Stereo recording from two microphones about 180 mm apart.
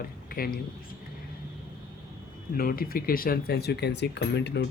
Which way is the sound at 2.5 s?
55° left (ahead or behind).